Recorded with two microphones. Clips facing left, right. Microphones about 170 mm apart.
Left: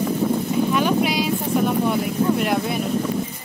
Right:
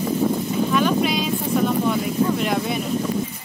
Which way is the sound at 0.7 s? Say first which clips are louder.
Right 2 dB; 10° left (ahead or behind).